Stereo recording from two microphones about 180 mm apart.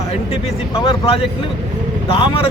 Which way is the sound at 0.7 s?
30° left (ahead or behind).